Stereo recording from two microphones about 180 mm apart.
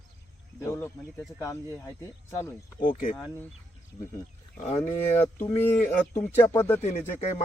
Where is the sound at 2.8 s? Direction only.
50° left (ahead or behind).